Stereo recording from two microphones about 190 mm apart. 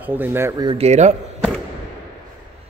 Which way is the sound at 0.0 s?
10° right (ahead or behind).